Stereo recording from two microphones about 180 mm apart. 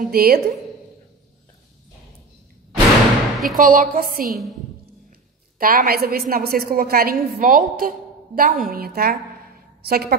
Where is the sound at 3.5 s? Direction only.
50° right (ahead or behind).